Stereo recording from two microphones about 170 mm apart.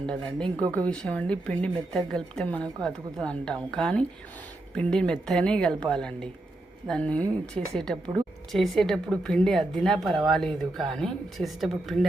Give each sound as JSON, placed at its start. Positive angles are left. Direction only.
{"t": 0.0, "sound": "a woman's voice", "side_deg": 5}